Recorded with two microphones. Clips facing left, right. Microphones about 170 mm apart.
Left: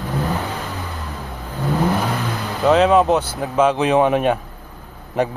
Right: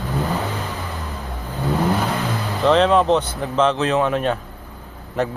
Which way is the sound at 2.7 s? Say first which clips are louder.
Left 1 dB; 5° left (ahead or behind).